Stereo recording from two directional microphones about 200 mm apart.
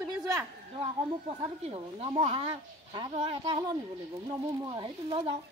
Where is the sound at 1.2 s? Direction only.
30° right (ahead or behind).